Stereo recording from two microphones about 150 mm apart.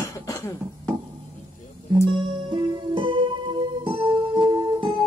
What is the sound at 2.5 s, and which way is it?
Music, 35° right (ahead or behind).